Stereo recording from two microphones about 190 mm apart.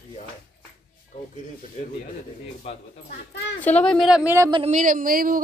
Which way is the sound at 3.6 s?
5° left (ahead or behind).